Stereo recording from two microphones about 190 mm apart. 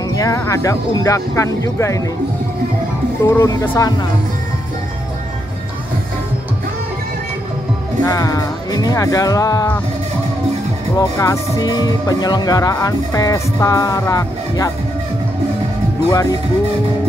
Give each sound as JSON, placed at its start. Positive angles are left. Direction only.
{"t": 0.1, "sound": "speech", "side_deg": 15}
{"t": 3.3, "sound": "speech", "side_deg": 15}
{"t": 8.0, "sound": "speech", "side_deg": 20}
{"t": 11.0, "sound": "speech", "side_deg": 15}
{"t": 16.1, "sound": "speech", "side_deg": 20}